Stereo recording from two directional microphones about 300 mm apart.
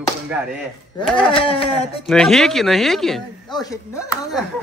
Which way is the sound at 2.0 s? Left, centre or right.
Centre.